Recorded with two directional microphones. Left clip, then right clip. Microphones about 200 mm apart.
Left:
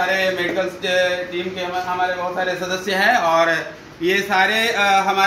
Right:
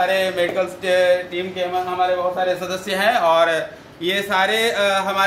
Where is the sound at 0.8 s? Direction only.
20° right (ahead or behind).